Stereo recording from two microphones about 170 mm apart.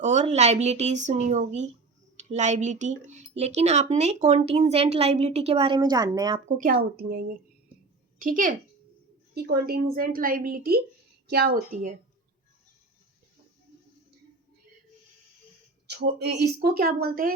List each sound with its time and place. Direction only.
0.0 s speech: 45° right (ahead or behind); by 6.4 s 25° right (ahead or behind)
6.6 s a woman's voice: 60° right (ahead or behind)
8.2 s a woman's voice: 50° right (ahead or behind)
9.3 s a woman's voice: 65° right (ahead or behind)
11.7 s a woman's voice: 50° right (ahead or behind)
15.9 s a woman's voice: 80° right; by 17.3 s 60° right (ahead or behind)